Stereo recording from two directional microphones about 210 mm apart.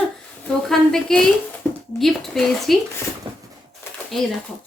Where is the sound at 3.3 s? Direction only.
25° right (ahead or behind).